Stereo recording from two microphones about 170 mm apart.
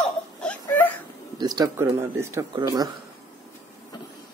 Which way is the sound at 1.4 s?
25° right (ahead or behind).